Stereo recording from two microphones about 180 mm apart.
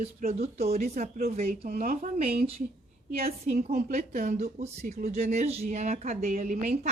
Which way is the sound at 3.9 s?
40° right (ahead or behind).